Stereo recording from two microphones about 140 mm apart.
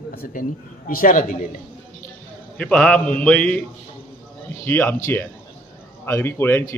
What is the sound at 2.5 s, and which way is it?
Speech, 5° left (ahead or behind).